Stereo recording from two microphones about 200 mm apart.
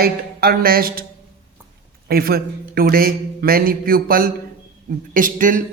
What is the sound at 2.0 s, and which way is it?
A man's voice, 50° right (ahead or behind).